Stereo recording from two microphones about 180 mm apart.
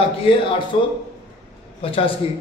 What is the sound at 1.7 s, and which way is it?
Speech, 30° left (ahead or behind).